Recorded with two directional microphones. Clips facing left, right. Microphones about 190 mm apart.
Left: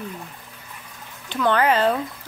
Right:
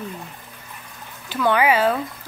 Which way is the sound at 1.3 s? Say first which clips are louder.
Right 1 dB; 10° right (ahead or behind).